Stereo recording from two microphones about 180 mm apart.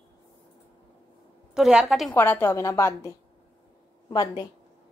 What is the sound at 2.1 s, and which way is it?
Speech, 10° left (ahead or behind).